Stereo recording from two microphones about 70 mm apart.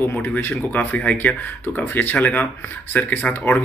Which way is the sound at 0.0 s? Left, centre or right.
Left.